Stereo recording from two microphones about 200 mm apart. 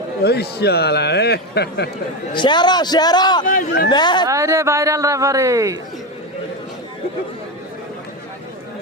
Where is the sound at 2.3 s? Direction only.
20° left (ahead or behind).